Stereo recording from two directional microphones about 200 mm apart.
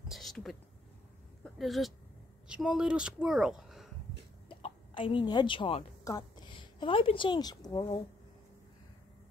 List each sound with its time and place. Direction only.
0.1 s a sound: centre (ahead or behind)
1.4 s speech: centre (ahead or behind)
4.5 s a woman's voice: 25° left (ahead or behind)